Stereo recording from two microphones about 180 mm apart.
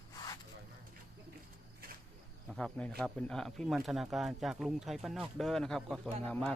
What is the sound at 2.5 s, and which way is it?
Speech, centre (ahead or behind).